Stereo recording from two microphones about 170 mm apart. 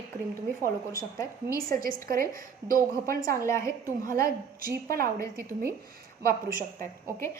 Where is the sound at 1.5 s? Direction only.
55° right (ahead or behind).